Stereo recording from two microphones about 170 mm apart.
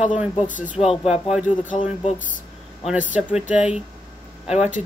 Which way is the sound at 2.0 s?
50° left (ahead or behind).